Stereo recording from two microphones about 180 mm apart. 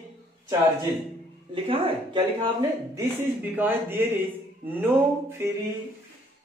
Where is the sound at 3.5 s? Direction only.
10° right (ahead or behind).